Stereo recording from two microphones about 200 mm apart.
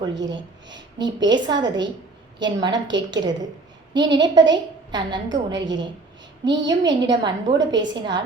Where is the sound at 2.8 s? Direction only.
65° right (ahead or behind).